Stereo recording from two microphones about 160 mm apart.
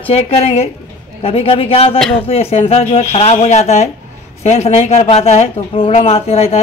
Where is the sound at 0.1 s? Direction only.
40° left (ahead or behind).